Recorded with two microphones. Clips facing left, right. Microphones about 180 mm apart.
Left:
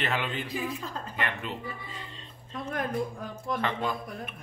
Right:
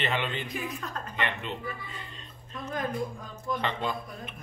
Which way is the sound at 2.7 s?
70° left (ahead or behind).